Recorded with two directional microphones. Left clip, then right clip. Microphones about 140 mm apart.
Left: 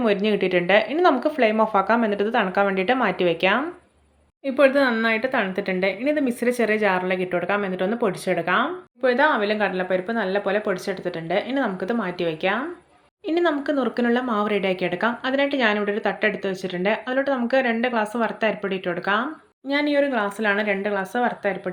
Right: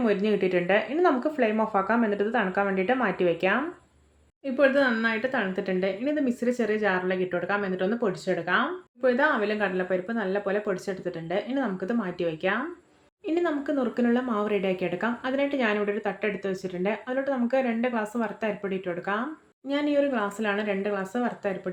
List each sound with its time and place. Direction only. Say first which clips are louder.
0.0 s speech: left 4 dB; 15° left (ahead or behind)